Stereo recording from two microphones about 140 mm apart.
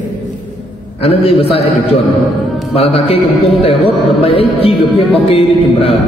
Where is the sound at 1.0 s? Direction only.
45° left (ahead or behind).